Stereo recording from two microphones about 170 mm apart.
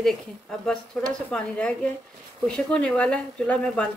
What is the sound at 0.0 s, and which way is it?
Dishes, 5° left (ahead or behind).